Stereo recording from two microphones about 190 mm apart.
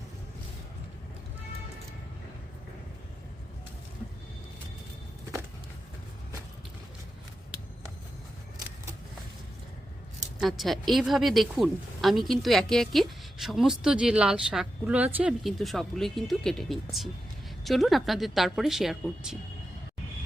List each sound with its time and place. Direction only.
10.4 s speech: centre (ahead or behind)